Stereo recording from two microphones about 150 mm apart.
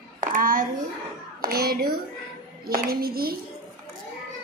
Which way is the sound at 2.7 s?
90° right.